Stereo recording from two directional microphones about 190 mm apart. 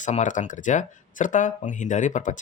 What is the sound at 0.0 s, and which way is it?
Speech, 40° left (ahead or behind).